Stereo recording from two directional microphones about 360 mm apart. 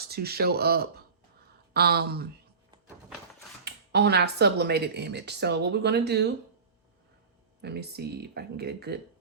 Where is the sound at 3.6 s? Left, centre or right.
Right.